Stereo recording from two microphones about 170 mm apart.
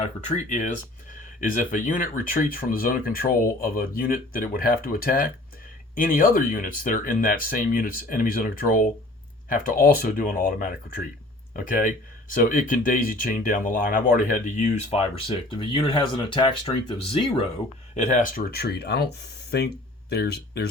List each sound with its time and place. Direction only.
0.0 s speech: 45° left (ahead or behind)
15.4 s speech: 25° left (ahead or behind)
17.9 s speech: 45° left (ahead or behind); by 20.7 s 75° left (ahead or behind)